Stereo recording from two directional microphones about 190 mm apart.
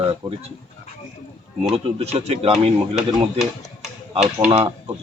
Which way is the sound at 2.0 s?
35° right (ahead or behind).